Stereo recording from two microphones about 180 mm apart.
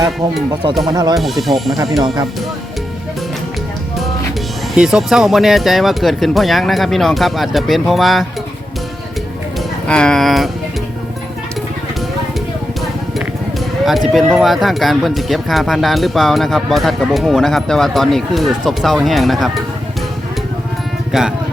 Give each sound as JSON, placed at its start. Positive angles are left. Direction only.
{"t": 0.9, "sound": "speech", "side_deg": -25}
{"t": 1.1, "sound": "speech", "side_deg": 0}
{"t": 1.7, "sound": "speech", "side_deg": -20}
{"t": 4.7, "sound": "speech", "side_deg": 0}
{"t": 9.8, "sound": "speech", "side_deg": 5}
{"t": 14.1, "sound": "speech", "side_deg": 0}
{"t": 21.1, "sound": "speech", "side_deg": 0}